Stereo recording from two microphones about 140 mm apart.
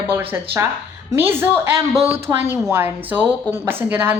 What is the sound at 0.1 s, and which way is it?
A woman's voice, 15° right (ahead or behind).